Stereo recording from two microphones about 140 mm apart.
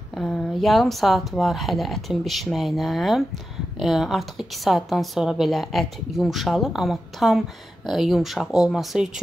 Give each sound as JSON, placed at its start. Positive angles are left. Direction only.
{"t": 0.1, "sound": "a woman's voice", "side_deg": 5}